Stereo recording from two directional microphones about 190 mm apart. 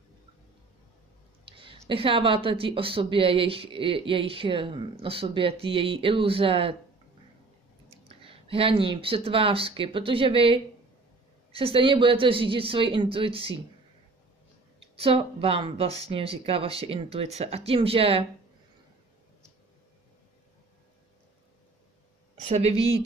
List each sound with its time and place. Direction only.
1.6 s speech: 30° right (ahead or behind)
7.9 s speech: 30° right (ahead or behind)
14.8 s speech: 30° right (ahead or behind)
22.4 s speech: 35° right (ahead or behind)